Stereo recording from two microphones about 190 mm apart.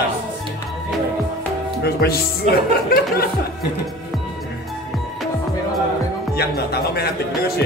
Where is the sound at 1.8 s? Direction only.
55° left (ahead or behind).